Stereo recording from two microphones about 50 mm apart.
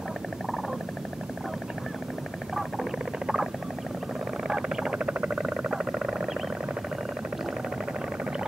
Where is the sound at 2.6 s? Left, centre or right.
Centre.